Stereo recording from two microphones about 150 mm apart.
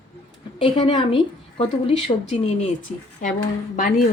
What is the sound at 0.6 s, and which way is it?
A woman's voice, 40° left (ahead or behind).